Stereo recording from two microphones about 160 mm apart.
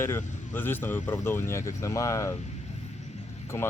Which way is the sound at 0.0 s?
15° left (ahead or behind).